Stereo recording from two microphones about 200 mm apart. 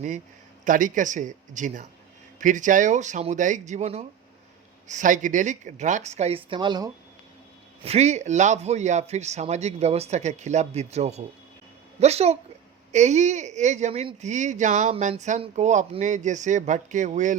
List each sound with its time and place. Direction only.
0.6 s speech: 40° right (ahead or behind); by 6.9 s 20° right (ahead or behind)
7.9 s speech: 35° right (ahead or behind)